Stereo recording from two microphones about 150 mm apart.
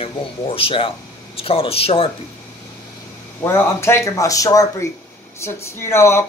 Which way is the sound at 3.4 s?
20° left (ahead or behind).